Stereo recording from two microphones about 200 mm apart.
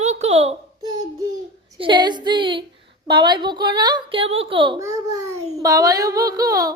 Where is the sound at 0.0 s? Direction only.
35° right (ahead or behind).